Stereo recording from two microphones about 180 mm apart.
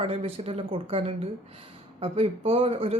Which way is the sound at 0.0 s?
35° right (ahead or behind).